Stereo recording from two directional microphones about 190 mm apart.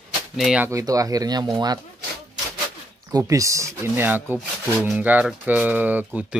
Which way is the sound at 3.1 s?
20° right (ahead or behind).